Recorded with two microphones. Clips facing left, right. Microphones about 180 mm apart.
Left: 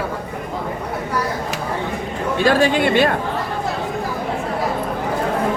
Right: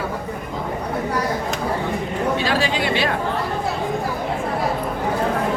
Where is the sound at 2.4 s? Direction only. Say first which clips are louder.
Left 5 dB; 50° left (ahead or behind).